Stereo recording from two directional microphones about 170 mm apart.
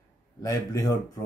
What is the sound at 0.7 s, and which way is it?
Speech, 20° left (ahead or behind).